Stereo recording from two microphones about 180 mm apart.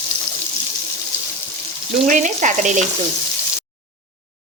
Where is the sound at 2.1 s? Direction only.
45° right (ahead or behind).